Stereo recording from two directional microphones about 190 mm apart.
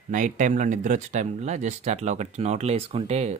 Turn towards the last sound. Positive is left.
turn(degrees=-35)  # may be behind; listen again after turning